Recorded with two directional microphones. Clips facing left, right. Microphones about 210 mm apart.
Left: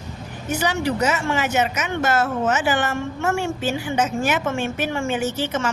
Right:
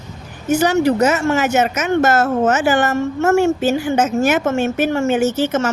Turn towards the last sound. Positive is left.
turn(degrees=-45)  # may be behind; listen again after turning